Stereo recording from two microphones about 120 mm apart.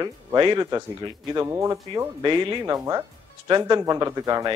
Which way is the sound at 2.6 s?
30° right (ahead or behind).